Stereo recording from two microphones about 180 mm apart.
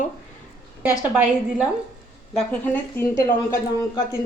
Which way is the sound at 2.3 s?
10° left (ahead or behind).